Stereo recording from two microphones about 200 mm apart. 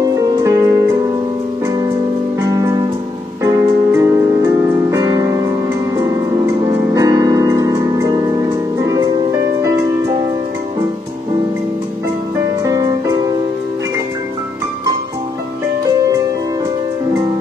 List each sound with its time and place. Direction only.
0.0 s music: 20° right (ahead or behind)
2.5 s music: 15° right (ahead or behind)
6.7 s keyboard: 15° right (ahead or behind)